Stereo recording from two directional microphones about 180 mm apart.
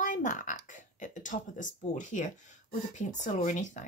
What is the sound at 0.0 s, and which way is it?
Speech, 45° left (ahead or behind).